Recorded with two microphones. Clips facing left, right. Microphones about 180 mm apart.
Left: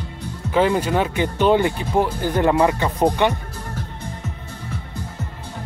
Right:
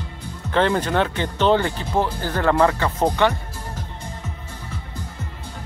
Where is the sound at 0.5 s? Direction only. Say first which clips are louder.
Left 1 dB; 10° left (ahead or behind).